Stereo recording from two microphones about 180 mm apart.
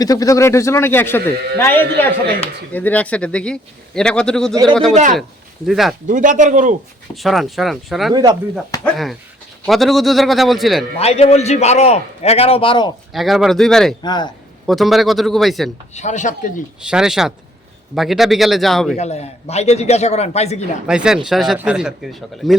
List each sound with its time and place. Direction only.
0.0 s a man's voice: 20° left (ahead or behind); by 5.9 s centre (ahead or behind)
6.1 s speech: 45° right (ahead or behind)
7.2 s a man's voice: centre (ahead or behind)
8.1 s speech: 25° right (ahead or behind)
8.7 s a man's voice: 20° left (ahead or behind)
9.6 s a man's voice: centre (ahead or behind)
10.9 s a man's voice: 35° left (ahead or behind)
13.1 s a man's voice: centre (ahead or behind)
14.0 s a man's voice: 25° left (ahead or behind)
14.7 s a man's voice: centre (ahead or behind)
16.0 s speech: 40° left (ahead or behind)
16.8 s a man's voice: 5° right (ahead or behind)
18.9 s a man's voice: 35° left (ahead or behind)
20.8 s a man's voice: 5° right (ahead or behind)